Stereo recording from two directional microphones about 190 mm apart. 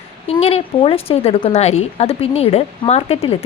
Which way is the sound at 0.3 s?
30° left (ahead or behind).